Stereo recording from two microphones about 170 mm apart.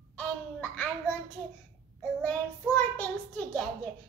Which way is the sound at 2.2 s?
5° left (ahead or behind).